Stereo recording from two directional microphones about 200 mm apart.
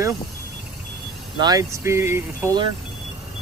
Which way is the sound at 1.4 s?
20° right (ahead or behind).